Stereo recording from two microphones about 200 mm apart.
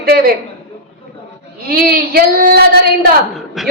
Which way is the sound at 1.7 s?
45° right (ahead or behind).